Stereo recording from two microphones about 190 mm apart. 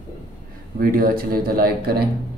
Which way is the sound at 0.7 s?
50° right (ahead or behind).